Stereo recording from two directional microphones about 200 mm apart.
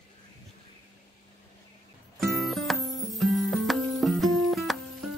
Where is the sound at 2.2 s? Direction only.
Centre (ahead or behind).